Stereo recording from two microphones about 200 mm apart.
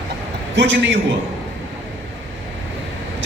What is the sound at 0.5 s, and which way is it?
Speech, 65° right (ahead or behind).